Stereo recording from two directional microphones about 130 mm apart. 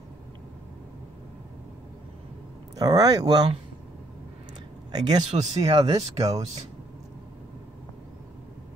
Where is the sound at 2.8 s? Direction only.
30° right (ahead or behind).